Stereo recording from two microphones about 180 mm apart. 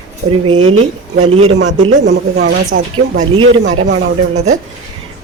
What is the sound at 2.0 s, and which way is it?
Speech, 70° right (ahead or behind).